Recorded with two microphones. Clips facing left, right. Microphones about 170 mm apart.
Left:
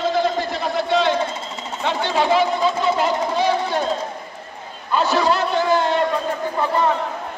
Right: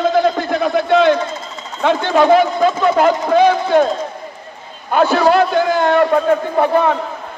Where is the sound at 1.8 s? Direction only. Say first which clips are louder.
Right 7 dB; 55° right (ahead or behind).